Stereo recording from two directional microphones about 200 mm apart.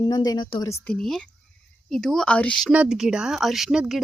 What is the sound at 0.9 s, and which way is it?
A woman's voice, centre (ahead or behind).